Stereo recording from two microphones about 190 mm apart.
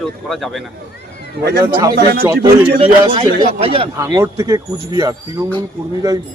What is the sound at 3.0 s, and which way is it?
Speech, 25° right (ahead or behind).